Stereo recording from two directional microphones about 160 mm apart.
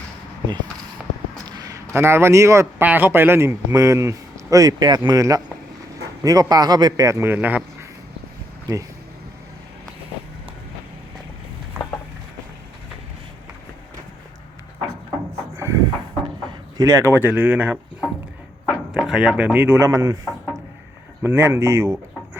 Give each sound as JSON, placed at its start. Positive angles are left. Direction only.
{"t": 1.5, "sound": "a man's voice", "side_deg": -25}
{"t": 15.5, "sound": "a sound", "side_deg": -20}
{"t": 16.5, "sound": "speech", "side_deg": -25}
{"t": 18.9, "sound": "speech", "side_deg": 0}
{"t": 21.2, "sound": "speech", "side_deg": -15}